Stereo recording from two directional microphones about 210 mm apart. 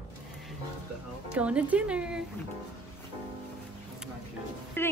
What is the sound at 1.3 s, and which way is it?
Speech, 5° right (ahead or behind).